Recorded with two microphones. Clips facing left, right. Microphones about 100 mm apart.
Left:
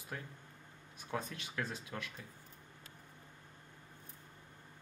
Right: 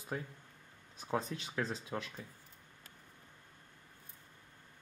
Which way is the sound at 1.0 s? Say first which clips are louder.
Right 4 dB; 30° right (ahead or behind).